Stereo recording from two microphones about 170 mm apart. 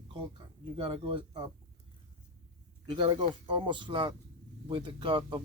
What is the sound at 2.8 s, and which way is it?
A man's voice, 30° right (ahead or behind).